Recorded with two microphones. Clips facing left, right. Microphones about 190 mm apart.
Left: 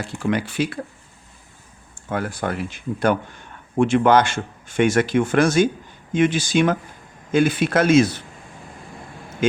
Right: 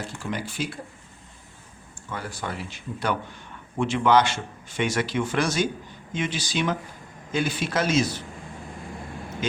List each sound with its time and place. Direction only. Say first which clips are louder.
0.2 s speech: left 10 dB; 65° left (ahead or behind)
2.0 s speech: left 8 dB; 50° left (ahead or behind)
9.4 s speech: left 9 dB; 50° left (ahead or behind)